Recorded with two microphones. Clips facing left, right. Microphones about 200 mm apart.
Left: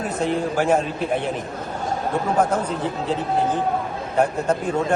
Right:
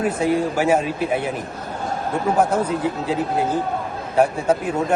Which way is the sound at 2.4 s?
10° right (ahead or behind).